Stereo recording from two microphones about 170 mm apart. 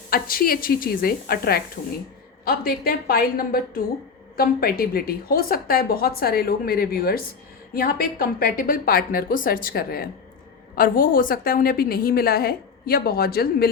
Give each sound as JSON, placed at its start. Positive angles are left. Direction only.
{"t": 0.1, "sound": "speech", "side_deg": 60}